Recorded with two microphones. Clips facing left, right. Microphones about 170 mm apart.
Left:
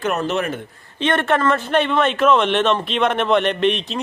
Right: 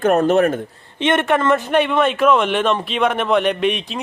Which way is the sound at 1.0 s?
20° right (ahead or behind).